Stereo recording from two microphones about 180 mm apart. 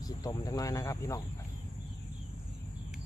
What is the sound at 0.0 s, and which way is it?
Speech, 20° left (ahead or behind).